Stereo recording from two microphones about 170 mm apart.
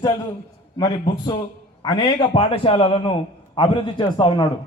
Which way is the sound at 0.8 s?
25° left (ahead or behind).